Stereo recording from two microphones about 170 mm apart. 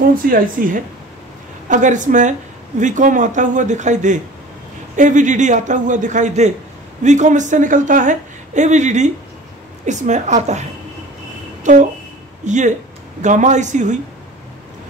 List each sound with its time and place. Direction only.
0.1 s a woman's voice: 55° right (ahead or behind)